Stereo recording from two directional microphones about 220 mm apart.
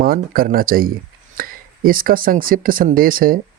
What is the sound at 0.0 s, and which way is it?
Speech, 40° right (ahead or behind).